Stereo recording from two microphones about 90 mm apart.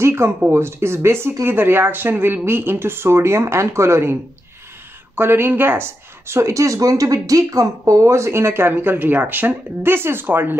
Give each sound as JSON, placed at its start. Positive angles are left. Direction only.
{"t": 0.0, "sound": "speech", "side_deg": -30}